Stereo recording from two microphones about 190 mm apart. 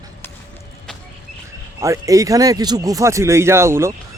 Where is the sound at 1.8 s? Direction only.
15° right (ahead or behind).